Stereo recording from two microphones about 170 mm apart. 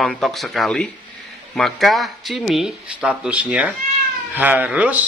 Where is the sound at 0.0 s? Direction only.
Centre (ahead or behind).